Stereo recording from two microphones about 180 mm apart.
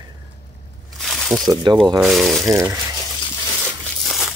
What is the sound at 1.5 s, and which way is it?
Speech, 25° right (ahead or behind).